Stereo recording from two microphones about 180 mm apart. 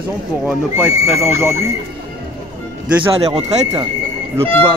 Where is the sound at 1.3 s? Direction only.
15° right (ahead or behind).